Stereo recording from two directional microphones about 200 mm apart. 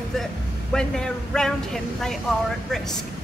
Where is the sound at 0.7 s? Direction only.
5° left (ahead or behind).